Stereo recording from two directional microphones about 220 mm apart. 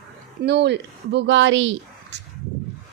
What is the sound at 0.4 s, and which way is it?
A woman's voice, 50° right (ahead or behind).